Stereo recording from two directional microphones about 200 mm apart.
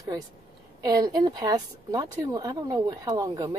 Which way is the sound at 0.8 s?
20° right (ahead or behind).